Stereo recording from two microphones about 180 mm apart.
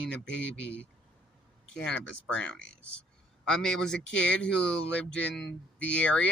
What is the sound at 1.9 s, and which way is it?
Speech, 90° left.